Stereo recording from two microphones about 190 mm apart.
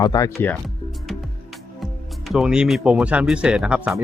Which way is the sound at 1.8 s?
Centre (ahead or behind).